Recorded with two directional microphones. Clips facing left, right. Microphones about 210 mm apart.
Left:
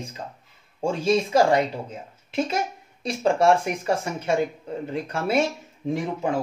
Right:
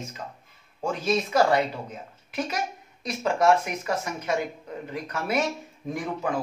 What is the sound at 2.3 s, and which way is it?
Speech, 25° left (ahead or behind).